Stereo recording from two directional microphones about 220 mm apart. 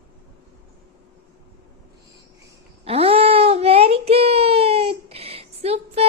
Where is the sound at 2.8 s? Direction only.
25° right (ahead or behind).